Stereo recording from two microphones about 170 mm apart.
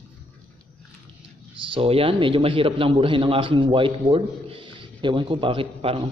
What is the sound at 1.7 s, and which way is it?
A man's voice, 35° right (ahead or behind).